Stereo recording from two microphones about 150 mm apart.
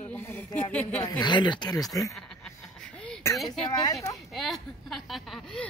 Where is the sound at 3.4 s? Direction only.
25° left (ahead or behind).